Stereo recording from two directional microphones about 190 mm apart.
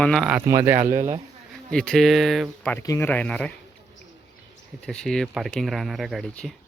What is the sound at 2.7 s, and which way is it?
Speech, 15° left (ahead or behind).